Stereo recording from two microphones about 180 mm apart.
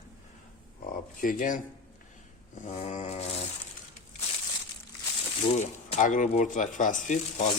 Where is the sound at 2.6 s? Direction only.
35° left (ahead or behind).